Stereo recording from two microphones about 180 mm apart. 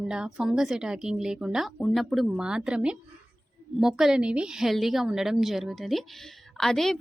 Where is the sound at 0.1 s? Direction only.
5° right (ahead or behind).